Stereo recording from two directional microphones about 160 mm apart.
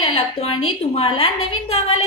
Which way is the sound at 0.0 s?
40° left (ahead or behind).